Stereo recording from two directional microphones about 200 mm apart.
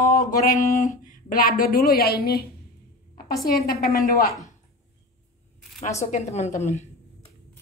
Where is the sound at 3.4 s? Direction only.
50° left (ahead or behind).